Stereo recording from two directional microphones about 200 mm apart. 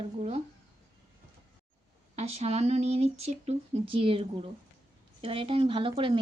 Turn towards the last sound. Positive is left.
turn(degrees=-25)  # may be behind; listen again after turning